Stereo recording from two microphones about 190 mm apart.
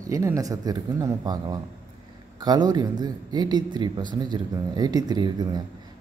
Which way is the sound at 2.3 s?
20° right (ahead or behind).